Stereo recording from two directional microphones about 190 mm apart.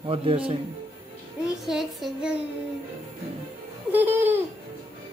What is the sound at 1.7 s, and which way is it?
Child singing, centre (ahead or behind).